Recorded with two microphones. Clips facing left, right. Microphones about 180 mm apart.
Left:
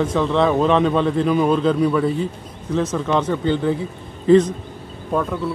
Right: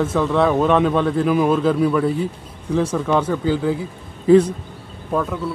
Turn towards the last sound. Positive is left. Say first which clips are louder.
# even
turn(degrees=0)  # may be behind; listen again after turning